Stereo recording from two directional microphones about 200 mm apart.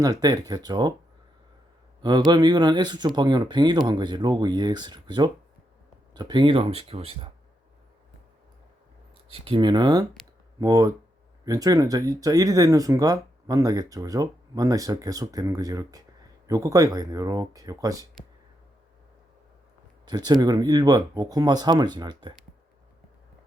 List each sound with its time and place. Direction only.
0.0 s speech: 20° right (ahead or behind)
2.0 s speech: 20° right (ahead or behind)
9.3 s speech: 25° right (ahead or behind)
20.1 s speech: 20° right (ahead or behind)